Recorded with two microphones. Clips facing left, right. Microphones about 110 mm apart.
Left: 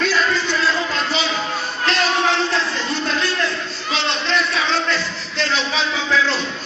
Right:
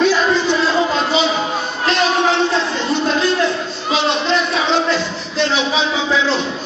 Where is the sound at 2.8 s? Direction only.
25° right (ahead or behind).